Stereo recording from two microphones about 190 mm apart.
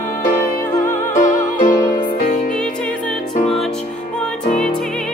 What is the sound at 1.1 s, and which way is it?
Music, 40° left (ahead or behind).